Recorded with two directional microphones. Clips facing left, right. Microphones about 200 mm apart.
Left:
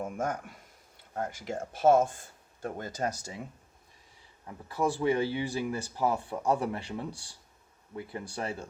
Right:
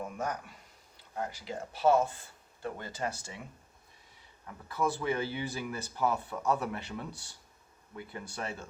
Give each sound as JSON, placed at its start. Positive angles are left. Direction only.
{"t": 0.0, "sound": "speech", "side_deg": 50}
{"t": 4.4, "sound": "speech", "side_deg": 30}